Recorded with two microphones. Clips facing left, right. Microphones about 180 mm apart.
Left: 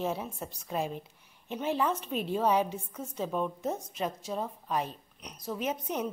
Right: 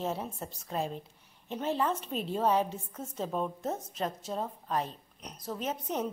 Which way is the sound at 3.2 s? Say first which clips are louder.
Left 1 dB; 25° right (ahead or behind).